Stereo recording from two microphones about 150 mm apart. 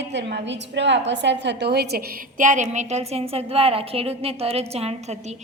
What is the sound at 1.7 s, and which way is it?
Speech, 90° right.